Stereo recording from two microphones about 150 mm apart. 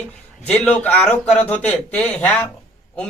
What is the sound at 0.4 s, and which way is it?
Speech, 10° left (ahead or behind).